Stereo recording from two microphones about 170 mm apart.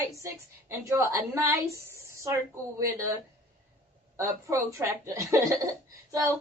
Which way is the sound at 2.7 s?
15° right (ahead or behind).